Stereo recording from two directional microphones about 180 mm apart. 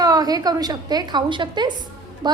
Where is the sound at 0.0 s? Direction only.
20° right (ahead or behind).